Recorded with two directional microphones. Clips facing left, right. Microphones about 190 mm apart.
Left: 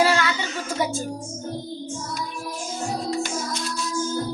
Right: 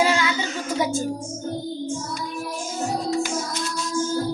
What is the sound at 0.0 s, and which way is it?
Child singing, 20° right (ahead or behind).